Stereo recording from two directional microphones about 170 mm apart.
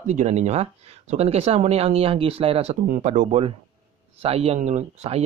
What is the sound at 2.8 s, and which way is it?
Speech, 50° right (ahead or behind).